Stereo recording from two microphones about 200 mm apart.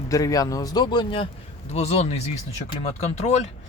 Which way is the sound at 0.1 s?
15° left (ahead or behind).